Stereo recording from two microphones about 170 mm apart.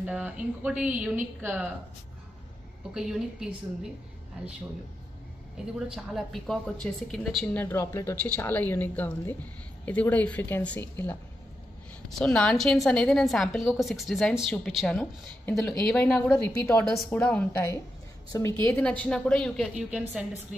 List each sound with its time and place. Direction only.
0.0 s a woman's voice: 10° right (ahead or behind)
2.9 s a woman's voice: 5° right (ahead or behind)
5.9 s a woman's voice: centre (ahead or behind)